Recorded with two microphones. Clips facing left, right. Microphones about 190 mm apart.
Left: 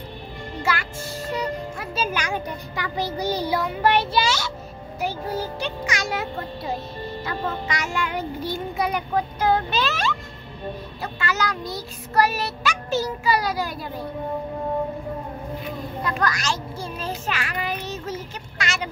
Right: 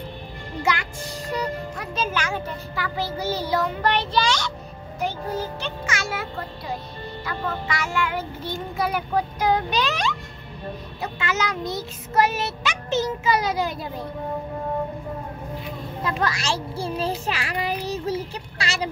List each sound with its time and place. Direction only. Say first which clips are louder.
0.6 s music: right 1 dB; 15° right (ahead or behind)
1.3 s a child's voice: even; 10° left (ahead or behind)
7.2 s child singing: even; 20° left (ahead or behind)
8.8 s a child's voice: right 1 dB; 5° right (ahead or behind)
11.0 s child singing: right 1 dB; 20° right (ahead or behind)
16.2 s a child's voice: even; 25° right (ahead or behind)